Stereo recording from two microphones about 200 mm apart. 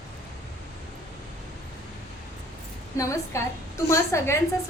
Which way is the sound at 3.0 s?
15° left (ahead or behind).